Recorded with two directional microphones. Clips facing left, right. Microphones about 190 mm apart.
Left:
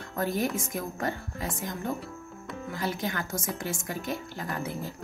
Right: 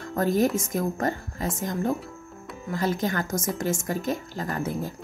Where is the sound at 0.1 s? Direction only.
45° right (ahead or behind).